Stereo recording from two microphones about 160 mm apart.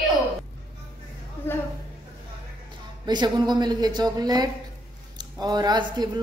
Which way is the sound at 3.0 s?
25° right (ahead or behind).